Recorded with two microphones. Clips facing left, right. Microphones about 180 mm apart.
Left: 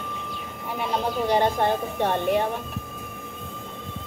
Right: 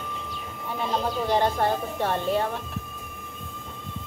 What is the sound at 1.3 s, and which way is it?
A woman's voice, 15° left (ahead or behind).